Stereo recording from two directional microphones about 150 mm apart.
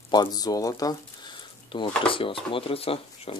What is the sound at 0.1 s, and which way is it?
Speech, 25° left (ahead or behind).